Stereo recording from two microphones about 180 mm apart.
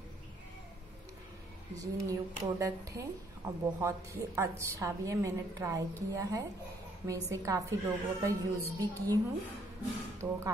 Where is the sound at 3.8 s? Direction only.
15° right (ahead or behind).